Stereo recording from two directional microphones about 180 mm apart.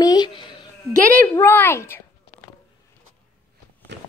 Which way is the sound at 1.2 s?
15° left (ahead or behind).